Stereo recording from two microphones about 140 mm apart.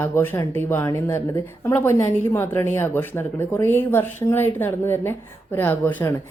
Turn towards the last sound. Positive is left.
turn(degrees=15)  # may be behind; listen again after turning